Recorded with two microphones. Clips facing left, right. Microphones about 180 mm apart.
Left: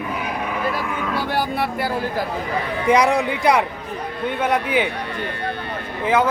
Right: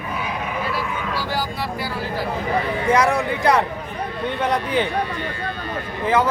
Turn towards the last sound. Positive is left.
turn(degrees=15)  # may be behind; listen again after turning